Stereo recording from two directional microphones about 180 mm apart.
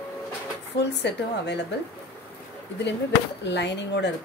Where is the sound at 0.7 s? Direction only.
70° left (ahead or behind).